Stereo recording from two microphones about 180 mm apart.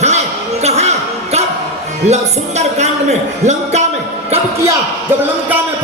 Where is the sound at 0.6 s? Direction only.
35° right (ahead or behind).